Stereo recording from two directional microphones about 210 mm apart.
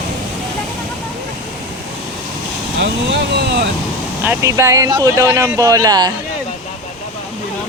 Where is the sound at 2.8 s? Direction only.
55° right (ahead or behind).